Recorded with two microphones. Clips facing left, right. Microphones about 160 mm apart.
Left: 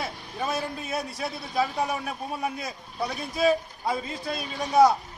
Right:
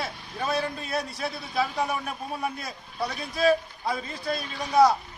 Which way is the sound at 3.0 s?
10° left (ahead or behind).